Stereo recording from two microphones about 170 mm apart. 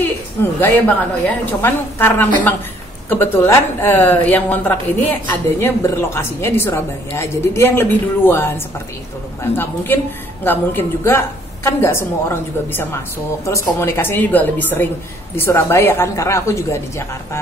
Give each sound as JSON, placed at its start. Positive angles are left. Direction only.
{"t": 0.0, "sound": "a woman's voice", "side_deg": 10}